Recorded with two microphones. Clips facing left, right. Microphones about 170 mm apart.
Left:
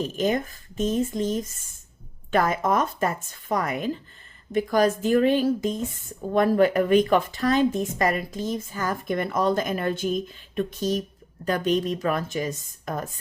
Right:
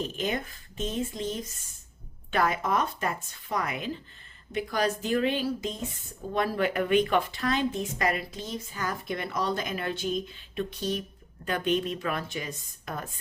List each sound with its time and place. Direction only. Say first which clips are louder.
0.2 s a woman's voice: left 7 dB; 40° left (ahead or behind)